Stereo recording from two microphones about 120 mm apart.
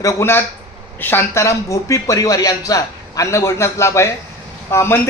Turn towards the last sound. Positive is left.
turn(degrees=20)  # may be behind; listen again after turning